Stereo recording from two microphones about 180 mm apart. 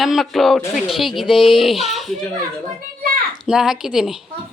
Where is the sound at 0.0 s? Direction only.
Centre (ahead or behind).